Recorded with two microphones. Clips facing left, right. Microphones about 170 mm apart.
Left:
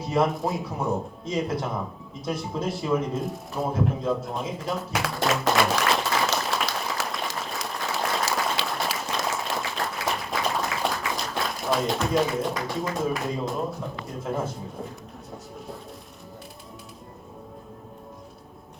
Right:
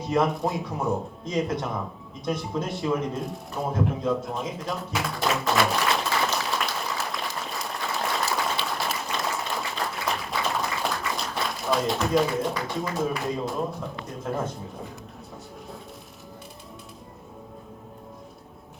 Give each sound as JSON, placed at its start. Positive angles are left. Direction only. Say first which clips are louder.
{"t": 0.0, "sound": "speech", "louder": "even", "side_deg": 0}
{"t": 4.9, "sound": "applause", "louder": "left 1 dB", "side_deg": 0}
{"t": 9.5, "sound": "a sound", "louder": "left 1 dB", "side_deg": 0}